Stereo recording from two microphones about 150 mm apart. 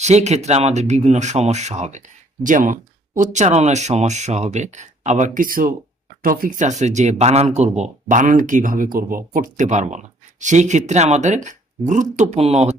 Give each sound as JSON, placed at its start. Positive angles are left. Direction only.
{"t": 0.0, "sound": "speech", "side_deg": -50}
{"t": 3.2, "sound": "speech", "side_deg": -50}